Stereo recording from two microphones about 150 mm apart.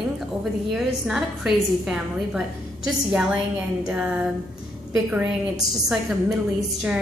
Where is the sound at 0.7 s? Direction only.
5° right (ahead or behind).